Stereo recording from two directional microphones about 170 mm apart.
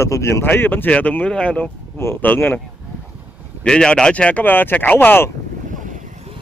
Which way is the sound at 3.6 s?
5° left (ahead or behind).